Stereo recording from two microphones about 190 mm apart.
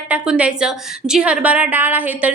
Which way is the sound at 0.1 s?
5° right (ahead or behind).